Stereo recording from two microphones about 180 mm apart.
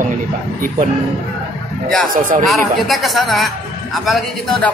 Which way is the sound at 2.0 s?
50° right (ahead or behind).